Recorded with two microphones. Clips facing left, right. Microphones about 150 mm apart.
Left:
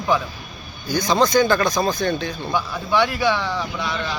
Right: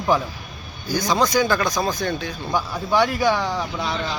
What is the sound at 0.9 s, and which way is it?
Speech, 10° right (ahead or behind).